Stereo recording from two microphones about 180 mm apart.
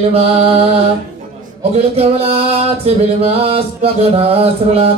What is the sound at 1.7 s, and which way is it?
Music, 35° right (ahead or behind).